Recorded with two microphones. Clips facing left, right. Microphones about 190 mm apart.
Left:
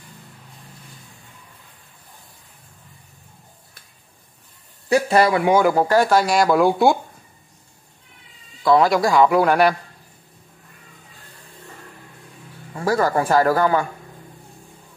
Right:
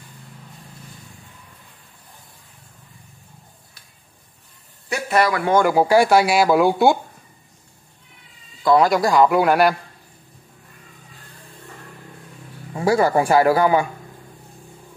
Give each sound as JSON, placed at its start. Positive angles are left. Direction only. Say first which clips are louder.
{"t": 4.8, "sound": "speech", "louder": "left 3 dB", "side_deg": 30}
{"t": 5.4, "sound": "speech", "louder": "left 1 dB", "side_deg": 10}
{"t": 5.7, "sound": "speech", "louder": "right 2 dB", "side_deg": -10}
{"t": 8.6, "sound": "speech", "louder": "even", "side_deg": 0}
{"t": 12.7, "sound": "speech", "louder": "right 2 dB", "side_deg": -10}